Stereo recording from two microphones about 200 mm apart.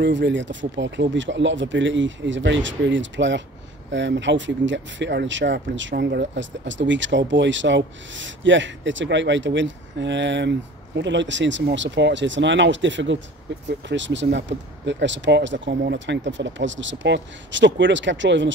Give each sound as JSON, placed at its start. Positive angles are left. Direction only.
{"t": 0.0, "sound": "speech", "side_deg": -65}